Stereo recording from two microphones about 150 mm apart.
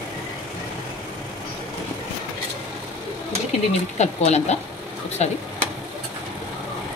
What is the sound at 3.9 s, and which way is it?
Speech, 50° left (ahead or behind).